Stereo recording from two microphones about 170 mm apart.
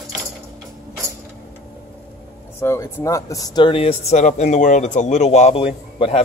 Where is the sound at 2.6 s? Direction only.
15° left (ahead or behind).